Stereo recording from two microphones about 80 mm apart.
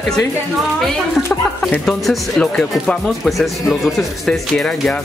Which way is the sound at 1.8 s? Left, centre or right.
Centre.